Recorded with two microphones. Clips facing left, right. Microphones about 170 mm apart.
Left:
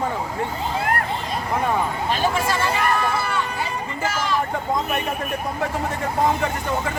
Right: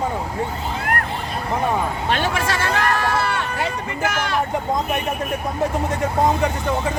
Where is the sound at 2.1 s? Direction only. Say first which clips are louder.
Even; 75° right (ahead or behind).